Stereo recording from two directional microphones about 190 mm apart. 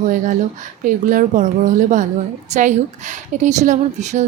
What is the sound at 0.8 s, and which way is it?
A woman's voice, 45° right (ahead or behind).